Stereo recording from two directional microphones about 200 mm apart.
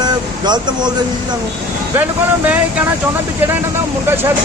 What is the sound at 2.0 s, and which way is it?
Speech, 10° right (ahead or behind).